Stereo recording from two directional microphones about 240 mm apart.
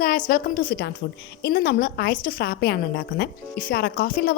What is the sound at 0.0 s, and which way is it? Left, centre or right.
A woman's voice, left.